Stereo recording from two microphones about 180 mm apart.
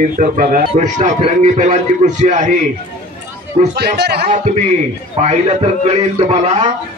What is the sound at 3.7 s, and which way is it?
Speech, 65° right (ahead or behind).